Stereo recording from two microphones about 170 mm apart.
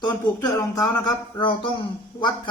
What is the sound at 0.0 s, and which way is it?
Speech, 20° left (ahead or behind).